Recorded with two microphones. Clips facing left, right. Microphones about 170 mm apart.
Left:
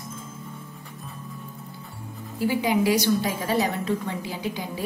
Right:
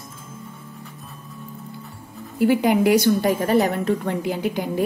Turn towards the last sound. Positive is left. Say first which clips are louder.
# right 7 dB
turn(degrees=-55)  # may be behind; listen again after turning